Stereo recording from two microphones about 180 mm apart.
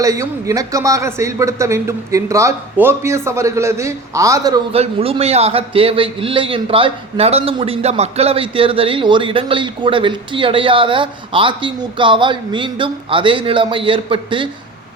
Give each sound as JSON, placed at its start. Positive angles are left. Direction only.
{"t": 0.0, "sound": "speech", "side_deg": -20}
{"t": 4.7, "sound": "a man's voice", "side_deg": -35}